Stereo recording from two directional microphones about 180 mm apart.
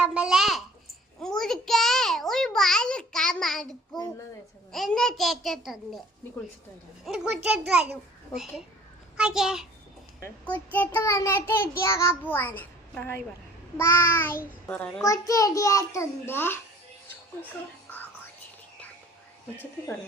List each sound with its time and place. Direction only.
0.0 s a child's voice: 5° right (ahead or behind)
4.7 s a child's voice: centre (ahead or behind)
7.0 s a child's voice: 5° right (ahead or behind)
10.2 s a child's voice: 15° left (ahead or behind)
15.0 s a child's voice: 20° left (ahead or behind)